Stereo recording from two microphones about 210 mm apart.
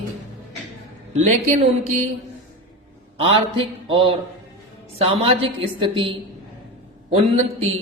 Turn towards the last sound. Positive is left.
turn(degrees=-30)  # may be behind; listen again after turning